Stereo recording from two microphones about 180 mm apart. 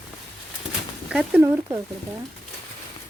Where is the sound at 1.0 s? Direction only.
5° right (ahead or behind).